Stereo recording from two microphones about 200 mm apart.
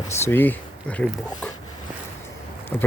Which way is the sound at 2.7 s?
5° left (ahead or behind).